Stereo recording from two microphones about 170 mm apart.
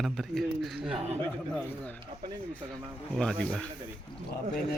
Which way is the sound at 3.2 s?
5° left (ahead or behind).